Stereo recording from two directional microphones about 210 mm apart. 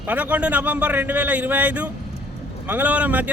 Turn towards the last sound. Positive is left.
turn(degrees=-5)  # may be behind; listen again after turning